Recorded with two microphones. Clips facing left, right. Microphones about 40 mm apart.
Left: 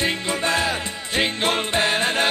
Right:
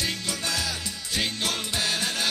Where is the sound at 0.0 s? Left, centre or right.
Left.